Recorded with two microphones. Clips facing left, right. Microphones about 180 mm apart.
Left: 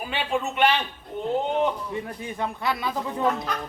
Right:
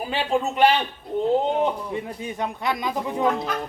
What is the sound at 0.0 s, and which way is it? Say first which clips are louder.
Speech: right 3 dB; 30° right (ahead or behind).